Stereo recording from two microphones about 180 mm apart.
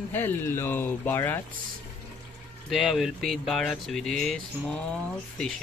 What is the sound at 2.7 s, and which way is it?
Speech, centre (ahead or behind).